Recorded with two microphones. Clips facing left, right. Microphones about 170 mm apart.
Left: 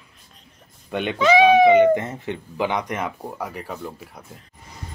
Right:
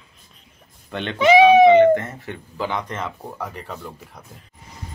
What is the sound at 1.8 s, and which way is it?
Speech, 20° left (ahead or behind).